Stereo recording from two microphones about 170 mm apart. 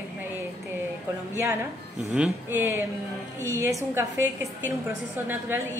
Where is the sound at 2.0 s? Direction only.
5° right (ahead or behind).